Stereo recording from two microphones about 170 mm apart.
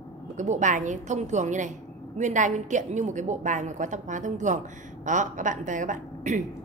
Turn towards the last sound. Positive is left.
turn(degrees=-45)  # may be behind; listen again after turning